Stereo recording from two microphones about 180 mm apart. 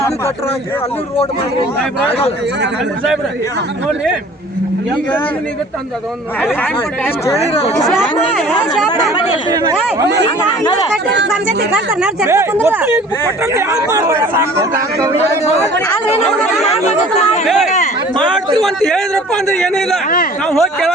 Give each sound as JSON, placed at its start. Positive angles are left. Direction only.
{"t": 7.9, "sound": "a man's voice", "side_deg": 0}
{"t": 11.9, "sound": "speech", "side_deg": -15}
{"t": 16.9, "sound": "speech", "side_deg": 40}
{"t": 18.6, "sound": "a man's voice", "side_deg": 0}